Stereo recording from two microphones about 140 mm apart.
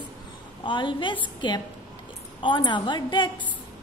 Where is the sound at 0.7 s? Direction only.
35° left (ahead or behind).